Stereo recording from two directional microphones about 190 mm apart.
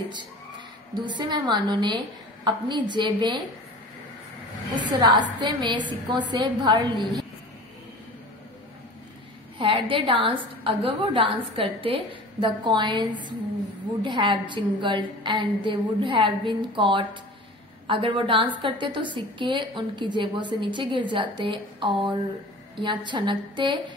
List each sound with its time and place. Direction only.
0.9 s a woman's voice: 25° right (ahead or behind)
4.9 s a woman's voice: 25° right (ahead or behind)
9.6 s a woman's voice: 30° right (ahead or behind)